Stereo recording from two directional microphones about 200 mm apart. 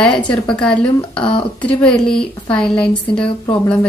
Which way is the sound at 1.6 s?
5° left (ahead or behind).